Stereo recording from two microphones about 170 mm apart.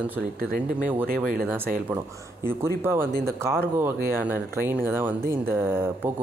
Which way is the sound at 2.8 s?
15° right (ahead or behind).